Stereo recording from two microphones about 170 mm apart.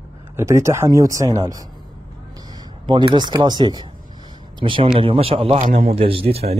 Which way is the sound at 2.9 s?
25° right (ahead or behind).